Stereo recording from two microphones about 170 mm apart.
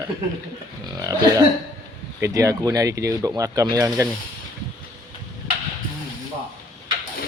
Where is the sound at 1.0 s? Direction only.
20° right (ahead or behind).